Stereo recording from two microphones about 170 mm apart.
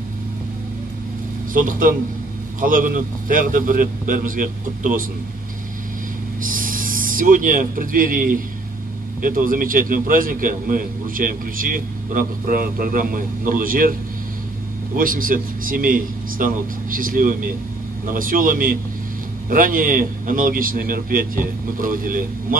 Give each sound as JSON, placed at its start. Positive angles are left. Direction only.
{"t": 1.5, "sound": "a man's voice", "side_deg": -55}
{"t": 6.4, "sound": "a man's voice", "side_deg": -55}
{"t": 15.0, "sound": "a man's voice", "side_deg": -55}